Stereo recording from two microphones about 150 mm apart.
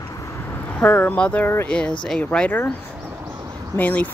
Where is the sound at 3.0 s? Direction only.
20° right (ahead or behind).